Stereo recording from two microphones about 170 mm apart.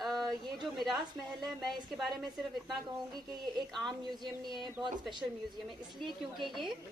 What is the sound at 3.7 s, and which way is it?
Speech, 5° left (ahead or behind).